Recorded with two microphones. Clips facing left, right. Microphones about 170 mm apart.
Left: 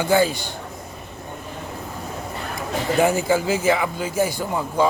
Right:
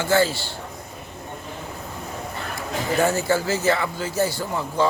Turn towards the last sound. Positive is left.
turn(degrees=15)  # may be behind; listen again after turning